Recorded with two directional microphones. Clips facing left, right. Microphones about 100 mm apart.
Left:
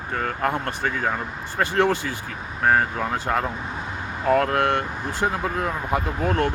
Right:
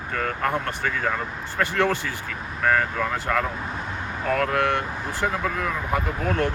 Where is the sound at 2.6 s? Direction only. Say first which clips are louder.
Left 2 dB; 30° left (ahead or behind).